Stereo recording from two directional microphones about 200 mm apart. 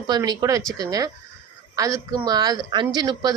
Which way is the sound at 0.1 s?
20° right (ahead or behind).